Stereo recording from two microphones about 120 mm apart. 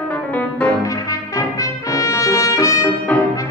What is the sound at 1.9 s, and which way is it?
Trumpet, 30° left (ahead or behind).